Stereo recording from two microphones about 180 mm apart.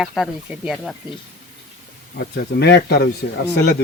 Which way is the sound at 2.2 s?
70° left (ahead or behind).